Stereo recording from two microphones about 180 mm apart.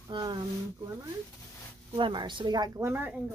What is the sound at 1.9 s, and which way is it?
Speech, 25° right (ahead or behind).